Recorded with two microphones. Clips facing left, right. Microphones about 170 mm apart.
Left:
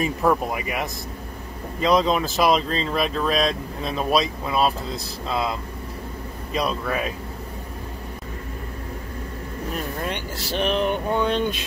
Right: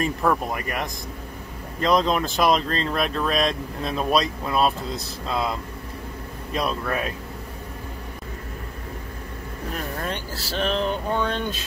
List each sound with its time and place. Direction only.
0.0 s speech: 10° left (ahead or behind)
10.6 s speech: 15° left (ahead or behind)